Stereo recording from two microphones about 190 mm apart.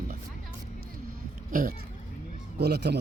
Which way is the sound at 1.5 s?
50° right (ahead or behind).